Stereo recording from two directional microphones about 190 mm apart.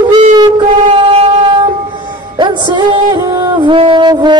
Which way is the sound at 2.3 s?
25° right (ahead or behind).